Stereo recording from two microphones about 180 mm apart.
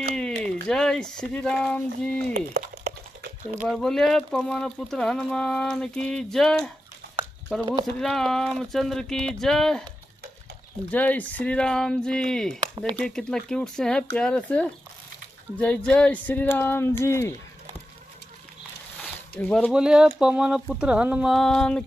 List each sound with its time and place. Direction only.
0.1 s speech: 5° left (ahead or behind)
2.3 s a sound: 55° right (ahead or behind)
3.6 s speech: centre (ahead or behind)
10.9 s speech: 10° left (ahead or behind)
12.5 s speech: 25° right (ahead or behind)
12.9 s speech: 5° left (ahead or behind)
19.3 s speech: 5° left (ahead or behind)
19.7 s speech: 5° right (ahead or behind)